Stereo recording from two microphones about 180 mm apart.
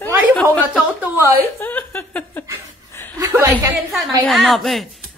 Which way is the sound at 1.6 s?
10° left (ahead or behind).